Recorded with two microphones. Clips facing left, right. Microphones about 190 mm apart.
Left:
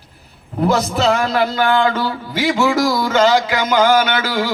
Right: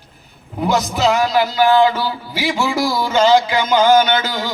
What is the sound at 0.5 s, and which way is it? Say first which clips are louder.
A man's voice: left 2 dB; centre (ahead or behind).